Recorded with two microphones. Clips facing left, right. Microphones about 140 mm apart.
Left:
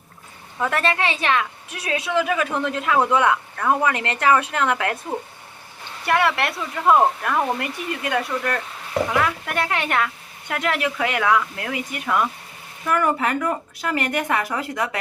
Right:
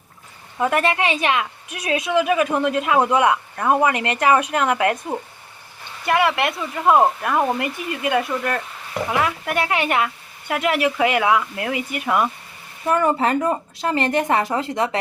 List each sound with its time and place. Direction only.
0.6 s a woman's voice: 15° right (ahead or behind)
6.1 s a woman's voice: 5° right (ahead or behind)
12.8 s a woman's voice: 25° right (ahead or behind)